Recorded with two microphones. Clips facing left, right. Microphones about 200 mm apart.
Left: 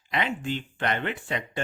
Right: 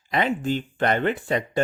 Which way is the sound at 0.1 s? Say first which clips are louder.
Right 5 dB; 40° right (ahead or behind).